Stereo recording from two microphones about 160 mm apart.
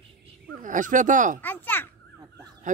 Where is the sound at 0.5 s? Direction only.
55° right (ahead or behind).